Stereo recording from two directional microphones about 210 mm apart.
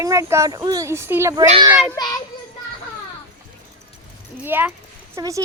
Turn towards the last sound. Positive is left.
turn(degrees=-15)  # may be behind; listen again after turning